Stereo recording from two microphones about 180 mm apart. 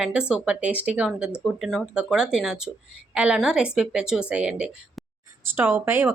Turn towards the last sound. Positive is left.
turn(degrees=-10)  # may be behind; listen again after turning